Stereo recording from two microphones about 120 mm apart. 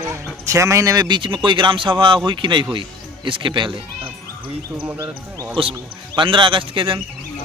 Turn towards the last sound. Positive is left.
turn(degrees=-45)  # may be behind; listen again after turning